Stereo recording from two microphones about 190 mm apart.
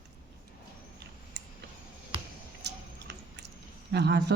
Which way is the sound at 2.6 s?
65° right (ahead or behind).